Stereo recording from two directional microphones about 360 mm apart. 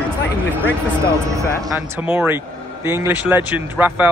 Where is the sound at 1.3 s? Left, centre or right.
Centre.